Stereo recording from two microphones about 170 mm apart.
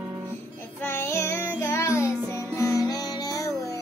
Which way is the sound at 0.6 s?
15° left (ahead or behind).